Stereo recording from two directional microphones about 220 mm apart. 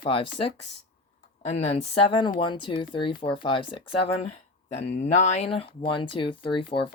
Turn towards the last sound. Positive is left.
turn(degrees=25)  # may be behind; listen again after turning